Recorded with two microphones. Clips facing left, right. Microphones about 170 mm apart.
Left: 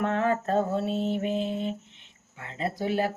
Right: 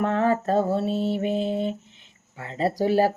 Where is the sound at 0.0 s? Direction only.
30° right (ahead or behind).